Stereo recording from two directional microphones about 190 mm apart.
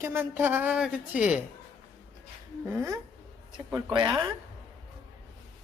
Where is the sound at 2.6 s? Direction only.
15° right (ahead or behind).